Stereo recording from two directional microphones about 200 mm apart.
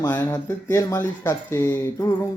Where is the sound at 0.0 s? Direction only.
10° left (ahead or behind).